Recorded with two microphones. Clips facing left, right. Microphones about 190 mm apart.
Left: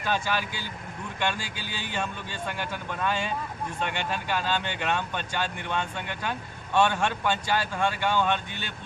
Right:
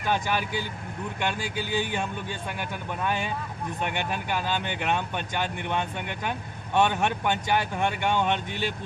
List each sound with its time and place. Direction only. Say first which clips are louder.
0.0 s speech: right 1 dB; 15° right (ahead or behind)
1.8 s speech: even; 15° right (ahead or behind)